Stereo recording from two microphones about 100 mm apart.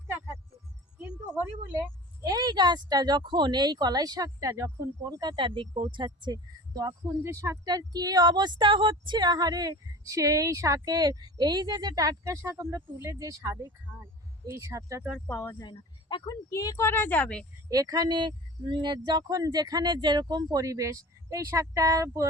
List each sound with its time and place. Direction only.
0.9 s a sound: 15° right (ahead or behind)
2.2 s speech: 40° right (ahead or behind); by 6.1 s 60° right (ahead or behind)
6.1 s speech: 45° right (ahead or behind); by 7.7 s 30° right (ahead or behind)
7.7 s speech: 45° right (ahead or behind)
15.3 s speech: 25° left (ahead or behind)
15.6 s speech: 55° left (ahead or behind)
16.5 s speech: 30° left (ahead or behind)
16.9 s a woman's voice: 20° left (ahead or behind)
17.7 s speech: 40° right (ahead or behind)